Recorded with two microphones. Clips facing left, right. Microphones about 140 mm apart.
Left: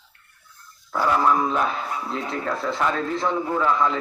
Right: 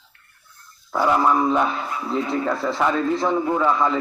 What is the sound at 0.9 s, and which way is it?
Speech, 15° right (ahead or behind).